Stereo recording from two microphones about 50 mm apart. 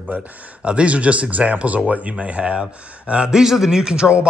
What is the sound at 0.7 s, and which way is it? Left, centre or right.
Speech, right.